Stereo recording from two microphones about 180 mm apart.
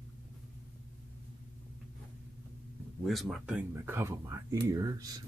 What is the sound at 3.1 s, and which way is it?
Speech, centre (ahead or behind).